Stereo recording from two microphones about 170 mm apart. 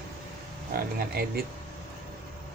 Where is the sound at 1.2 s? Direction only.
65° right (ahead or behind).